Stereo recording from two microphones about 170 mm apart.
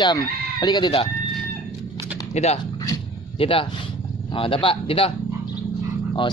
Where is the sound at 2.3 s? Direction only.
40° left (ahead or behind).